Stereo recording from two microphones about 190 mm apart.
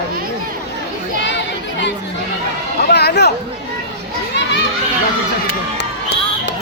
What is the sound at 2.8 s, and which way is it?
Speech, 60° left (ahead or behind).